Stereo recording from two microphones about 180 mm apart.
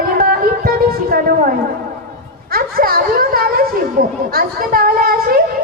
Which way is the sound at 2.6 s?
55° right (ahead or behind).